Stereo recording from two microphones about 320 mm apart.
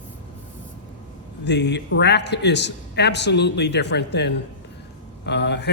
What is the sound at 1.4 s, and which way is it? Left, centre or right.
Speech, left.